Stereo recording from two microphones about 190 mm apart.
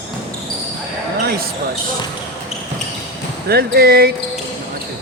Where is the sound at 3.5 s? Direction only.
55° right (ahead or behind).